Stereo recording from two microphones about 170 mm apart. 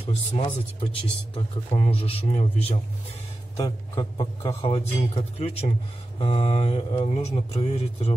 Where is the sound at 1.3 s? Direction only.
35° left (ahead or behind).